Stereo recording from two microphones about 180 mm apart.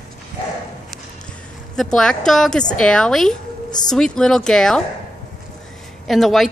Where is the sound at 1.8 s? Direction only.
5° left (ahead or behind).